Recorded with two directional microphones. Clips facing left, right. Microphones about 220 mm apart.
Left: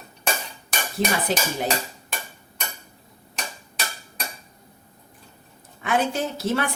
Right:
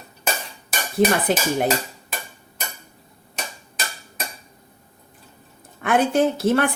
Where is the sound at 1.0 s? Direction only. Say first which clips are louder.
Right 7 dB; 55° right (ahead or behind).